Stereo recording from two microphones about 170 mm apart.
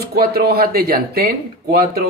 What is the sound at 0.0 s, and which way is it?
Speech, 65° right (ahead or behind).